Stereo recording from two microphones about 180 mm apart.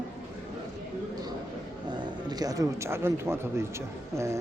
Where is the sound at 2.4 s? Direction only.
20° right (ahead or behind).